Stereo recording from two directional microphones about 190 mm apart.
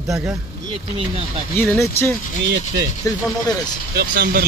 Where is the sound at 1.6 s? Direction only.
10° left (ahead or behind).